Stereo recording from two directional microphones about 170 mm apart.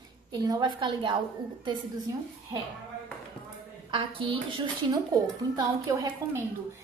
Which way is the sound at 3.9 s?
30° right (ahead or behind).